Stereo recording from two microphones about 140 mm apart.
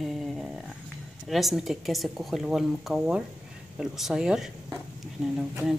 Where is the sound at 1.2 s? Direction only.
Centre (ahead or behind).